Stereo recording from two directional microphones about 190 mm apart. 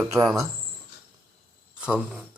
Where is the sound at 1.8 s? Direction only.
5° right (ahead or behind).